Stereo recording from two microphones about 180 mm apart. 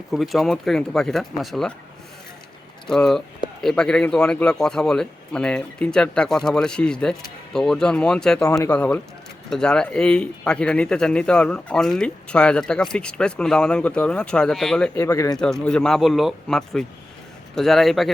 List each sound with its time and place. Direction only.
0.1 s speech: centre (ahead or behind)
2.8 s speech: 5° left (ahead or behind)
8.4 s speech: 20° left (ahead or behind)
8.7 s speech: 10° left (ahead or behind)
14.9 s speech: 15° left (ahead or behind)
15.6 s speech: 5° left (ahead or behind)